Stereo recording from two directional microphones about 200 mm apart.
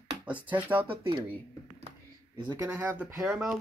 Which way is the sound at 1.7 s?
30° right (ahead or behind).